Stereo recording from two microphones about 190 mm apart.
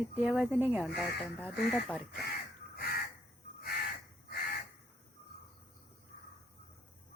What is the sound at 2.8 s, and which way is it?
Crow, 55° left (ahead or behind).